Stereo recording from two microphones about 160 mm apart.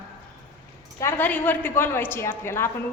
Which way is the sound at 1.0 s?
15° left (ahead or behind).